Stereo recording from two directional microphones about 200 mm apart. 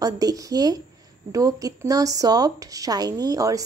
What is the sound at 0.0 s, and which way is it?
A woman's voice, 15° right (ahead or behind).